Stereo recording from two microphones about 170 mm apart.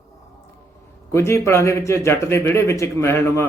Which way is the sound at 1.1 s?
15° left (ahead or behind).